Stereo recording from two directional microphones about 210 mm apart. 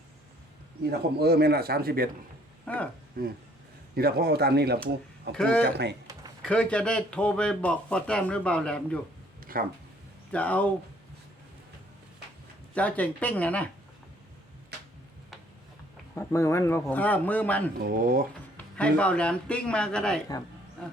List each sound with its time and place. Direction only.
0.9 s speech: 50° right (ahead or behind)
2.6 s speech: 5° left (ahead or behind)
3.2 s speech: 45° right (ahead or behind)
5.3 s speech: 5° left (ahead or behind)
5.6 s speech: 50° right (ahead or behind)
6.4 s speech: 5° left (ahead or behind)
9.4 s a sound: 45° right (ahead or behind)
10.3 s speech: 5° left (ahead or behind)
12.7 s speech: 5° left (ahead or behind)
16.1 s speech: 15° left (ahead or behind)
17.7 s speech: 45° right (ahead or behind)
18.5 s speech: 5° left (ahead or behind)